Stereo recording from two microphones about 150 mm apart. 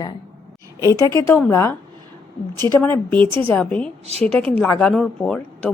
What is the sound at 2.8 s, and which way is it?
A woman's voice, 15° left (ahead or behind).